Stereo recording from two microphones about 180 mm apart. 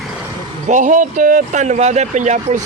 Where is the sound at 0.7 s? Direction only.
45° right (ahead or behind).